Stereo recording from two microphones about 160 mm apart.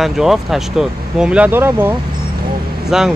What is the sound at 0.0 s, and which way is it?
Speech, centre (ahead or behind).